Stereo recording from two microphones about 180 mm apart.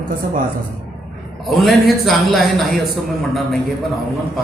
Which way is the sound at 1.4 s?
Centre (ahead or behind).